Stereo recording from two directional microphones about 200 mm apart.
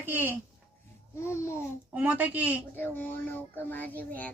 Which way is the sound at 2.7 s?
10° left (ahead or behind).